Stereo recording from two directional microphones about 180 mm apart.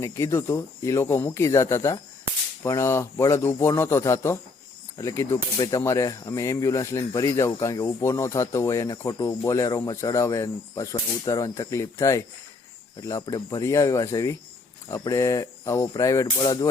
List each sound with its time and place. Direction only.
0.0 s speech: 15° left (ahead or behind)